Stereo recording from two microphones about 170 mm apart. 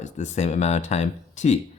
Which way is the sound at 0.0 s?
40° left (ahead or behind).